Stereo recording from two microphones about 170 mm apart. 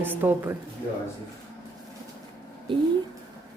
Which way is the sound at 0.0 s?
10° right (ahead or behind).